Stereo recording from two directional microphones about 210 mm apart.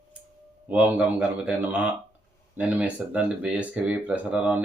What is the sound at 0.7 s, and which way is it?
Speech, 5° right (ahead or behind).